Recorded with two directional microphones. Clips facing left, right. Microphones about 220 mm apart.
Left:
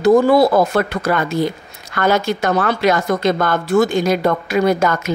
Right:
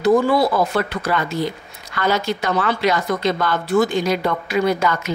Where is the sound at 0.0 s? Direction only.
45° left (ahead or behind).